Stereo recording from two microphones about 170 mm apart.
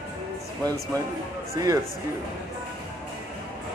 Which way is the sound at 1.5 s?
20° right (ahead or behind).